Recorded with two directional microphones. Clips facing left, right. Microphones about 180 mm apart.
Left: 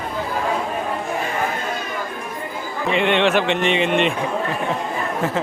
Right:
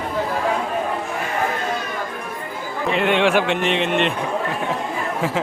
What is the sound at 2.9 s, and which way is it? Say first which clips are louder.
Speech: even; 5° right (ahead or behind).